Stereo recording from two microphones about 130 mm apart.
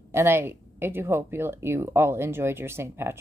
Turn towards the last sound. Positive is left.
turn(degrees=-20)  # may be behind; listen again after turning